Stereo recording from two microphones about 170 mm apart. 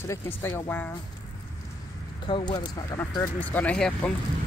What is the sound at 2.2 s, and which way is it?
Speech, 30° left (ahead or behind).